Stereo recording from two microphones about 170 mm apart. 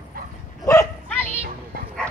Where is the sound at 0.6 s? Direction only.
15° left (ahead or behind).